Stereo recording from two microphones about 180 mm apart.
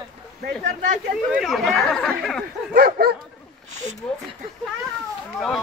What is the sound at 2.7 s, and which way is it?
Bow-wow, 55° right (ahead or behind).